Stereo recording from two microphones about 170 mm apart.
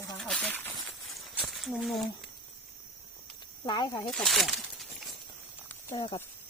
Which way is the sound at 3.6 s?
25° left (ahead or behind).